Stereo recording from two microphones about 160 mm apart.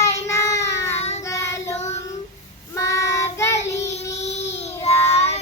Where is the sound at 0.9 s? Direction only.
40° left (ahead or behind).